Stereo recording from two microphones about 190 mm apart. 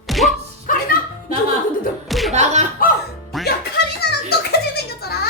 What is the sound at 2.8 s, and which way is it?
Music, 50° left (ahead or behind).